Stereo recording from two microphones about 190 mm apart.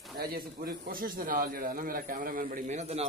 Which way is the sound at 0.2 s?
55° right (ahead or behind).